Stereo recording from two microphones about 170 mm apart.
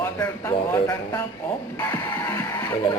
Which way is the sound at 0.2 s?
20° left (ahead or behind).